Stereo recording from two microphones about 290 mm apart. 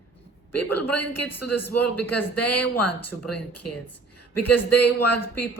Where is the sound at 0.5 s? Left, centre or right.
Left.